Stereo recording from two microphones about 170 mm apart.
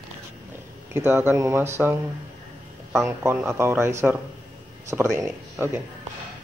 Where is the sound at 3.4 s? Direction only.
15° right (ahead or behind).